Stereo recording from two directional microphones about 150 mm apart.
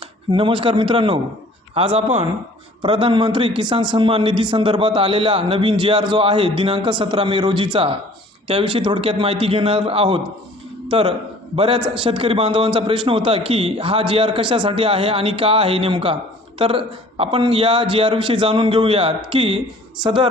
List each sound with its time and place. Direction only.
0.3 s a man's voice: 35° right (ahead or behind)